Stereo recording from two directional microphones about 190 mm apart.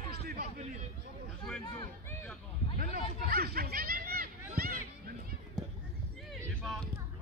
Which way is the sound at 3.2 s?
50° right (ahead or behind).